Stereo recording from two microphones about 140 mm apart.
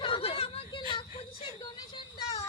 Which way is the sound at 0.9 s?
35° left (ahead or behind).